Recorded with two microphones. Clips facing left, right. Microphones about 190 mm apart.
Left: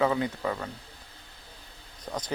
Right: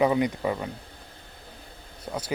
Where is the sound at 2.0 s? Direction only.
10° right (ahead or behind).